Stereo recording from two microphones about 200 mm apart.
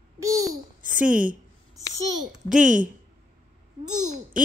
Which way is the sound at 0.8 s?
40° right (ahead or behind).